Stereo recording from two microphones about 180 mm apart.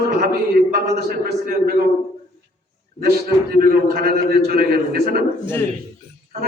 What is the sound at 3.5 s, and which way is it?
A man's voice, 55° right (ahead or behind).